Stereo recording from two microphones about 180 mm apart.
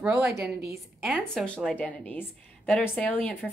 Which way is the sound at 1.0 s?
Centre (ahead or behind).